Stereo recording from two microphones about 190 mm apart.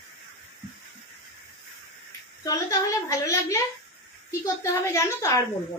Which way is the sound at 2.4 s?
20° left (ahead or behind).